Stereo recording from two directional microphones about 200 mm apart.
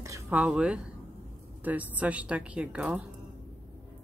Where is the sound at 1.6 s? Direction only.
10° right (ahead or behind).